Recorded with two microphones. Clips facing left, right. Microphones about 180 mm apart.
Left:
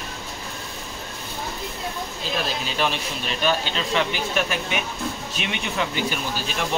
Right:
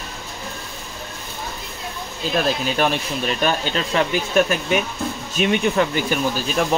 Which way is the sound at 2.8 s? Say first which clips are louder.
Right 3 dB; 50° right (ahead or behind).